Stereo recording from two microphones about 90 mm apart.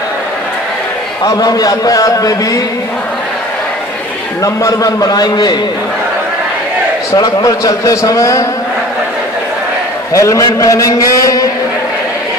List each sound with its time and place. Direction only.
1.2 s a man's voice: 40° left (ahead or behind)
4.4 s a man's voice: 40° left (ahead or behind)
7.1 s a man's voice: 40° left (ahead or behind)
10.1 s a man's voice: 35° left (ahead or behind)